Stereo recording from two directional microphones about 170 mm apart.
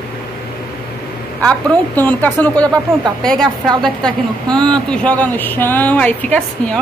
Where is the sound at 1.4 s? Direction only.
10° left (ahead or behind).